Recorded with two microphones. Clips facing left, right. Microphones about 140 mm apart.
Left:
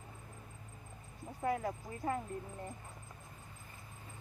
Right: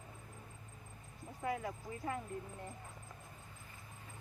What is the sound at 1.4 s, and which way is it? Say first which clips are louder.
Speech: left 4 dB; 40° left (ahead or behind).